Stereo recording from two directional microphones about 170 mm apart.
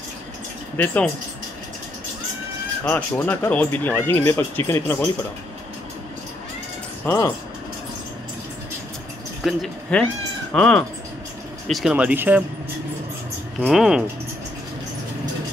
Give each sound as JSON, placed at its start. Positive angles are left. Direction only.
{"t": 0.7, "sound": "speech", "side_deg": 10}
{"t": 2.8, "sound": "speech", "side_deg": 10}
{"t": 7.1, "sound": "speech", "side_deg": 15}
{"t": 9.4, "sound": "speech", "side_deg": 0}
{"t": 13.6, "sound": "speech", "side_deg": 0}